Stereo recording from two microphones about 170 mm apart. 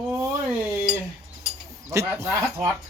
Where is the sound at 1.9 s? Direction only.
15° right (ahead or behind).